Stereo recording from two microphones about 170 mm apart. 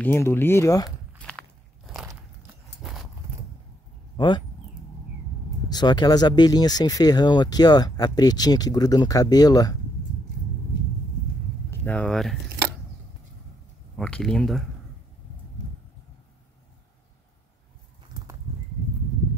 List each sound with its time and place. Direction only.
0.0 s speech: 15° left (ahead or behind)
0.8 s walk: 5° left (ahead or behind)
2.8 s horse: centre (ahead or behind)
4.2 s speech: 25° left (ahead or behind)
5.7 s speech: 25° left (ahead or behind)
11.8 s speech: 10° left (ahead or behind)
13.9 s speech: 5° left (ahead or behind)